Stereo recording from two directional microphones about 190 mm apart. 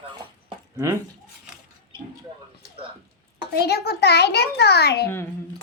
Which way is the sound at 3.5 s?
55° left (ahead or behind).